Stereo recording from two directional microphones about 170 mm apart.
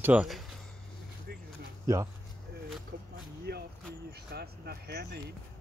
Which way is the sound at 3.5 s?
70° right (ahead or behind).